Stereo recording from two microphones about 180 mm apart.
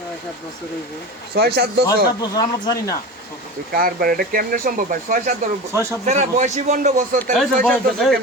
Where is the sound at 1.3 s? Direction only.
65° right (ahead or behind).